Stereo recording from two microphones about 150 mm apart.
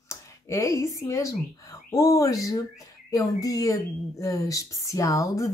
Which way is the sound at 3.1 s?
20° left (ahead or behind).